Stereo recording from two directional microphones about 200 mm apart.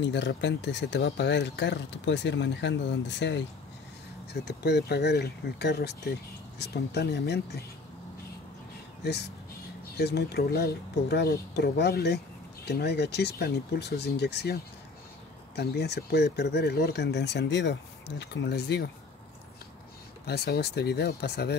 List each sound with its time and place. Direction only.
0.0 s speech: 60° left (ahead or behind)
9.0 s speech: 55° left (ahead or behind)
20.2 s speech: 55° left (ahead or behind)